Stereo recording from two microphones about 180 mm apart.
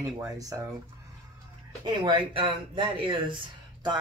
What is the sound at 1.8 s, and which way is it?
Speech, 25° right (ahead or behind).